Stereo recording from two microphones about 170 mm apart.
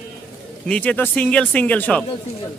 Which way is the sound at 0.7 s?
10° left (ahead or behind).